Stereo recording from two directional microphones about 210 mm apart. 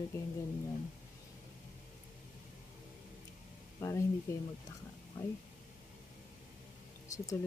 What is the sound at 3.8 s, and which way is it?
Speech, 15° left (ahead or behind).